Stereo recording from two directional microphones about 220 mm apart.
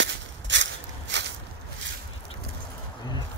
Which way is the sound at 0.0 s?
55° right (ahead or behind).